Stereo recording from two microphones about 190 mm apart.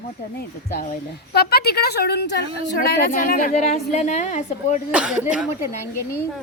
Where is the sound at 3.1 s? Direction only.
45° left (ahead or behind).